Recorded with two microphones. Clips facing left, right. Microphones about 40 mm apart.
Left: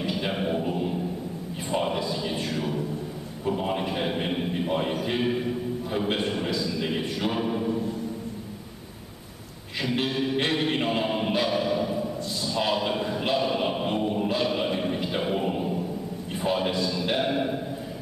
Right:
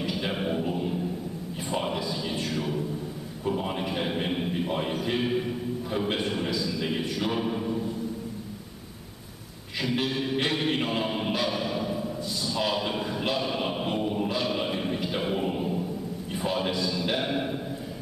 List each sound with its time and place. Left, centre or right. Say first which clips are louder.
0.0 s a sound: left 2 dB; centre
3.4 s a man's voice: left 2 dB; centre
9.8 s chant: left 1 dB; centre
16.3 s a man's voice: left 2 dB; centre